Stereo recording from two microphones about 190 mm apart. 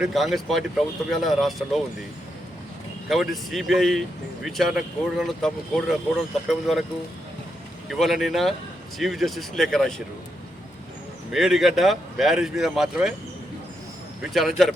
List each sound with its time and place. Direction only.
0.0 s speech: centre (ahead or behind)
3.1 s speech: centre (ahead or behind)
7.9 s speech: centre (ahead or behind)
11.3 s speech: centre (ahead or behind)
14.2 s speech: centre (ahead or behind)